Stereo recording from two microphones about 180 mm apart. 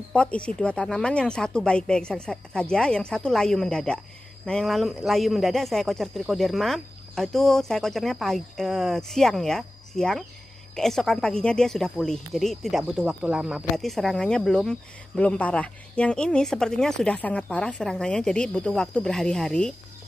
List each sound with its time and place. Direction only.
0.1 s speech: 5° left (ahead or behind)